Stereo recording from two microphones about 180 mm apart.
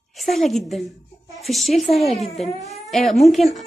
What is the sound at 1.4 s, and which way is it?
A woman's voice, centre (ahead or behind).